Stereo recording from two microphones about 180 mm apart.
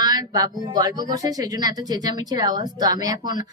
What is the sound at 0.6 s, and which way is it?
Speech, 25° right (ahead or behind).